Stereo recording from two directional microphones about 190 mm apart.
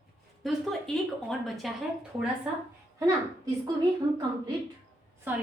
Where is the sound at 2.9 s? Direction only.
20° right (ahead or behind).